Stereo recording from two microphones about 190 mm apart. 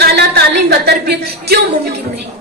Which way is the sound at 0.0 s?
55° right (ahead or behind).